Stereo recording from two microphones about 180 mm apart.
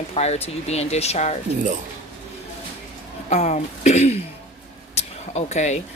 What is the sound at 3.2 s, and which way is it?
Speech, 40° left (ahead or behind).